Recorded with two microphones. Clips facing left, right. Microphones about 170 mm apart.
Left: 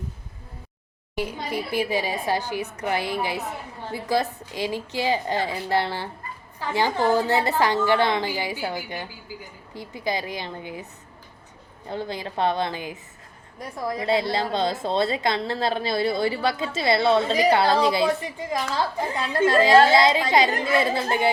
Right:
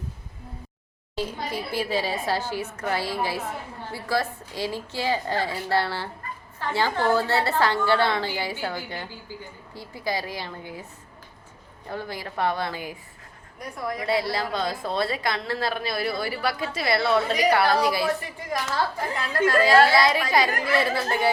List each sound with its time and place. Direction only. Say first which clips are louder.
1.7 s a woman's voice: left 1 dB; 15° left (ahead or behind)
11.9 s a woman's voice: left 3 dB; 25° left (ahead or behind)